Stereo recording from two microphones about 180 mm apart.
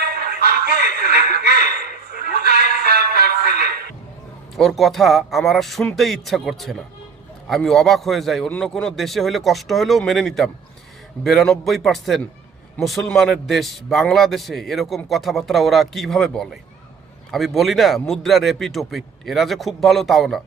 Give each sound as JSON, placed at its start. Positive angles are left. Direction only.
{"t": 0.0, "sound": "music", "side_deg": -60}
{"t": 2.1, "sound": "a man's voice", "side_deg": -60}
{"t": 4.5, "sound": "a man's voice", "side_deg": 0}